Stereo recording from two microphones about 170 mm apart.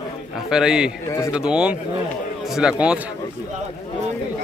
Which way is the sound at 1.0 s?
15° left (ahead or behind).